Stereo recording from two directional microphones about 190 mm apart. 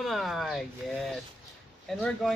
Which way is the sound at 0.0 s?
Centre (ahead or behind).